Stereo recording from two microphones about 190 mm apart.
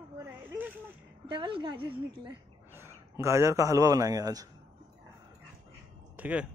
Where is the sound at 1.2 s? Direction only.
25° right (ahead or behind).